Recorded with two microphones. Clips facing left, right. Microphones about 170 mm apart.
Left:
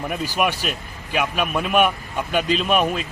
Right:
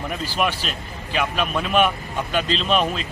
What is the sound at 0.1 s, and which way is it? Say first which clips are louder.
Speech: left 1 dB; 10° left (ahead or behind).